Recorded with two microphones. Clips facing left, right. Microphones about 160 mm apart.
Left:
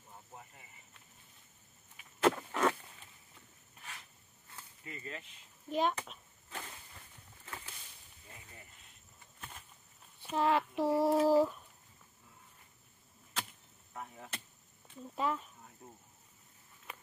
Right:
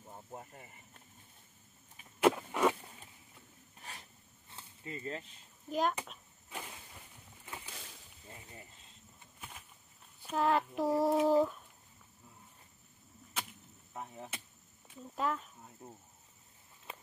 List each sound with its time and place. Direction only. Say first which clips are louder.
0.1 s a sound: right 5 dB; 40° right (ahead or behind)
2.1 s walk: right 2 dB; 10° right (ahead or behind)
4.5 s a sound: right 4 dB; 25° right (ahead or behind)
5.7 s speech: even; centre (ahead or behind)
7.4 s a sound: right 1 dB; 15° right (ahead or behind)
8.3 s cricket: right 4 dB; 25° right (ahead or behind)
9.4 s walk: even; 5° right (ahead or behind)
10.2 s speech: even; centre (ahead or behind)
11.2 s a sound: left 1 dB; centre (ahead or behind)
13.9 s insect: right 2 dB; 20° right (ahead or behind)
15.1 s speech: even; centre (ahead or behind)
15.8 s speech: right 3 dB; 25° right (ahead or behind)